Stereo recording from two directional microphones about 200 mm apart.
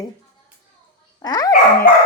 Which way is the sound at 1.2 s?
20° left (ahead or behind).